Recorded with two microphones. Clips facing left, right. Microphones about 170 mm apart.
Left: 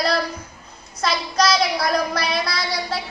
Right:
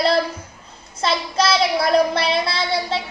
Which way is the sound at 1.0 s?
25° right (ahead or behind).